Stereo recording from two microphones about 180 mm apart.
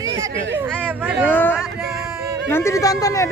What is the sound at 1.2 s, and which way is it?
Speech, 10° left (ahead or behind).